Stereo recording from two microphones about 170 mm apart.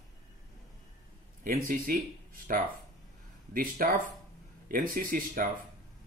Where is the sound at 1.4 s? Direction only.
55° right (ahead or behind).